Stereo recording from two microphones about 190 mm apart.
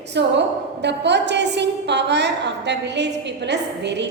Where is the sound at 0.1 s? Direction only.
65° right (ahead or behind).